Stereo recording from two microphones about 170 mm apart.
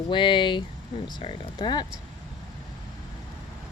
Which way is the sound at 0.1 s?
30° left (ahead or behind).